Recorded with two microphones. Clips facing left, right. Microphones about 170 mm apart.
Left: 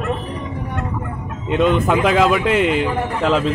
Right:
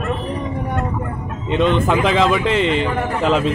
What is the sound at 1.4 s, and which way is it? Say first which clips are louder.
A man's voice: even; 5° left (ahead or behind).